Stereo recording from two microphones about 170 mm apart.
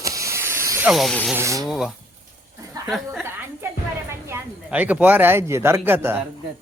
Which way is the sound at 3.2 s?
15° right (ahead or behind).